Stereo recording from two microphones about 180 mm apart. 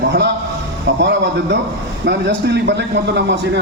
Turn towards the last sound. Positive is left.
turn(degrees=-70)  # may be behind; listen again after turning